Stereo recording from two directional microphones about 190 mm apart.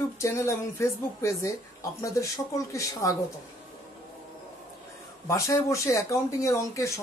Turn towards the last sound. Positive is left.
turn(degrees=15)  # may be behind; listen again after turning